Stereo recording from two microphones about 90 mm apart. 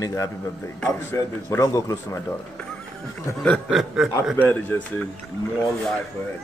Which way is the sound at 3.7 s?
Centre (ahead or behind).